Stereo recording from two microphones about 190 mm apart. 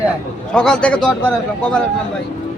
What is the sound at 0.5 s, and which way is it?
Speech, 5° left (ahead or behind).